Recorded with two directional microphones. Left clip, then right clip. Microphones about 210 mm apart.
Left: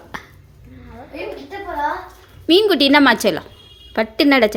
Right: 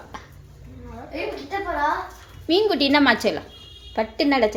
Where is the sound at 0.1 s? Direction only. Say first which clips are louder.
Left 7 dB; 35° left (ahead or behind).